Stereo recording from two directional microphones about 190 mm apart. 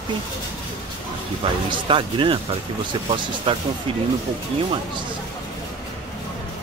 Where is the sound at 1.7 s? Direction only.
25° right (ahead or behind).